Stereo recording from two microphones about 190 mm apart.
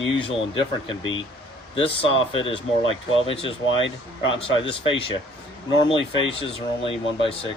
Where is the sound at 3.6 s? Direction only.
85° left.